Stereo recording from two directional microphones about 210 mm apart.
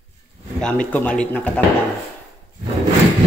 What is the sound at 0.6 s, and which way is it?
Speech, 5° left (ahead or behind).